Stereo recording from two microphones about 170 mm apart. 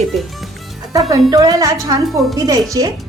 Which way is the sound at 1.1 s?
20° right (ahead or behind).